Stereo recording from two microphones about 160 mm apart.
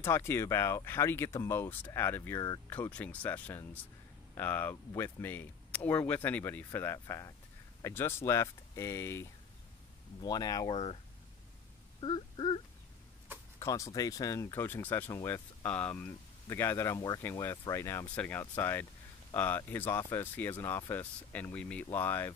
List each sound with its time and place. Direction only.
0.0 s speech: 15° left (ahead or behind)
10.7 s speech: 35° left (ahead or behind)
12.0 s wail: 30° left (ahead or behind)
13.6 s speech: 20° left (ahead or behind)